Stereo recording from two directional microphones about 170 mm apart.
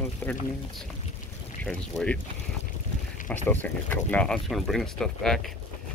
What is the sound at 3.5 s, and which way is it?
Speech, 10° left (ahead or behind).